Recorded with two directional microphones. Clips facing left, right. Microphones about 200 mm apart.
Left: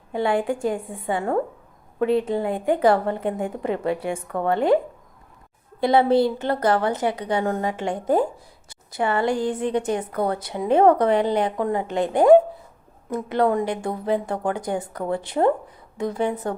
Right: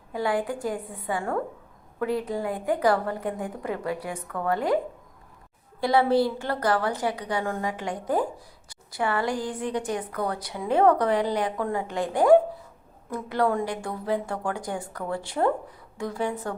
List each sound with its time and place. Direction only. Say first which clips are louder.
0.1 s a woman's voice: left 4 dB; 25° left (ahead or behind)
5.8 s a woman's voice: left 4 dB; 20° left (ahead or behind)